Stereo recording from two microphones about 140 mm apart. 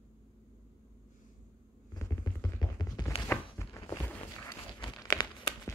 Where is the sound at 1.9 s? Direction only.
25° left (ahead or behind).